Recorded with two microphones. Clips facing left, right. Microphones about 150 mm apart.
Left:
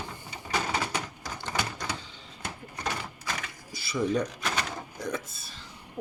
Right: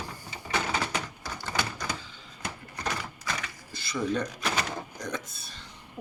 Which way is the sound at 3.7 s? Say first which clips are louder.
Left 2 dB; 5° left (ahead or behind).